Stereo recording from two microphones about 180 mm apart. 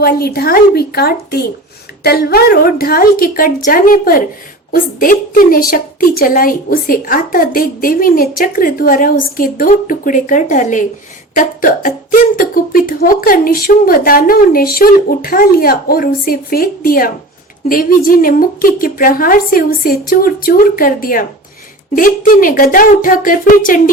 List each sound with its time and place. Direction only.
0.0 s a woman's voice: 60° left (ahead or behind)